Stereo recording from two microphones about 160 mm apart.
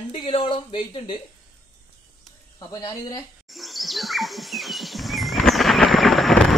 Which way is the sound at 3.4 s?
Centre (ahead or behind).